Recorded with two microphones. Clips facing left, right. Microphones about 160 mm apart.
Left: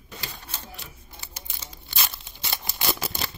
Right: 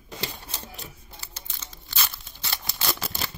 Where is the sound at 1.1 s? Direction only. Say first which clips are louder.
Left 1 dB; 15° left (ahead or behind).